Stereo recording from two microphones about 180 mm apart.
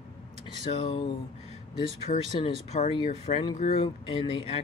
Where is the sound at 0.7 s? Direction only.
35° left (ahead or behind).